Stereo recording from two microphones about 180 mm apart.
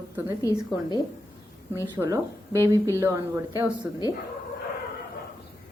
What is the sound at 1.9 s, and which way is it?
A woman's voice, 15° right (ahead or behind).